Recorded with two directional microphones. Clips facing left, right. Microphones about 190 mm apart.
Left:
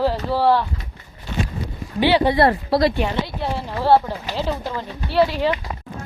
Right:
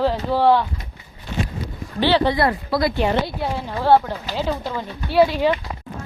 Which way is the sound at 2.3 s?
35° left (ahead or behind).